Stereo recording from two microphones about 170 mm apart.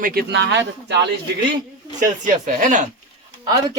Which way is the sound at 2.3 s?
50° right (ahead or behind).